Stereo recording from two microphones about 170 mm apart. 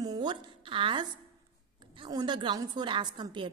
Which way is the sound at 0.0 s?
25° right (ahead or behind).